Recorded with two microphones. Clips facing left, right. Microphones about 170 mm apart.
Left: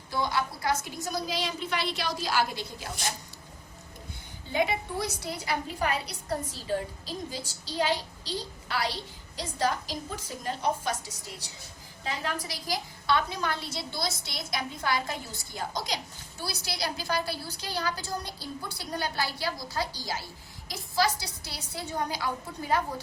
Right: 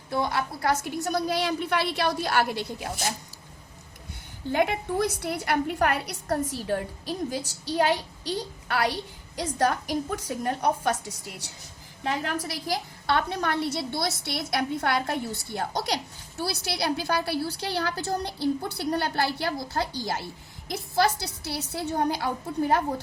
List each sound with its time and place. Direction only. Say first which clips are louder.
0.1 s a woman's voice: right 2 dB; 60° right (ahead or behind)
4.5 s a woman's voice: right 4 dB; 60° right (ahead or behind)
12.0 s a woman's voice: right 5 dB; 60° right (ahead or behind)